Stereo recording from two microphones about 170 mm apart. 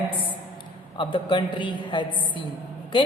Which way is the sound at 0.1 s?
30° left (ahead or behind).